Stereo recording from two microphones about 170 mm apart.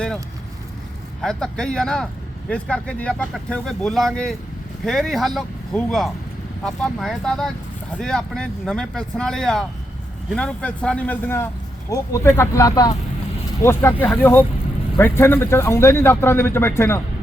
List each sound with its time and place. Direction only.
1.2 s speech: 5° left (ahead or behind)